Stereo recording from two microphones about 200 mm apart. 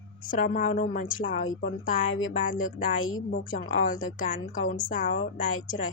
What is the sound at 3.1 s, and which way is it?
Speech, 90° left.